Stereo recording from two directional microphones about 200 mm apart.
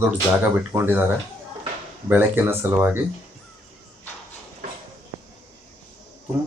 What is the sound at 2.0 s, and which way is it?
Speech, 10° right (ahead or behind).